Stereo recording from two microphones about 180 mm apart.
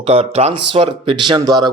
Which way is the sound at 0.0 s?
35° right (ahead or behind).